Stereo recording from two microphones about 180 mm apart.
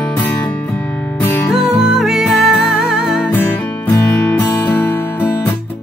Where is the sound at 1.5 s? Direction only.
5° right (ahead or behind).